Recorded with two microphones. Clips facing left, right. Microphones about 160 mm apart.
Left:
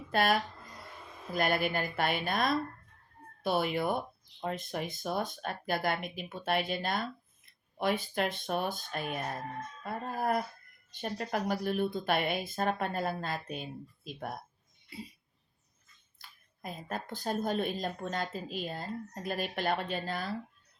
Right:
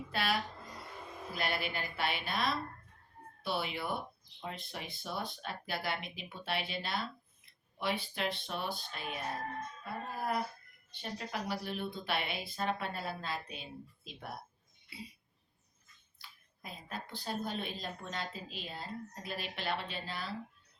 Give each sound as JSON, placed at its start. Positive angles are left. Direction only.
{"t": 0.1, "sound": "speech", "side_deg": 50}
{"t": 16.1, "sound": "speech", "side_deg": 45}